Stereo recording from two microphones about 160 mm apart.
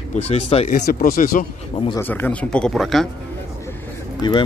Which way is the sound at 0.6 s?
50° left (ahead or behind).